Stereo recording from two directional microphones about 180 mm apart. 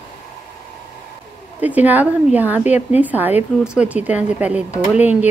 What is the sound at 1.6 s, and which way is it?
A woman's voice, 10° right (ahead or behind).